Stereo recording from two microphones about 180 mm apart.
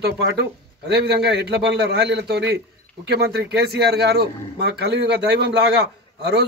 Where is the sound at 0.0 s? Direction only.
70° right (ahead or behind).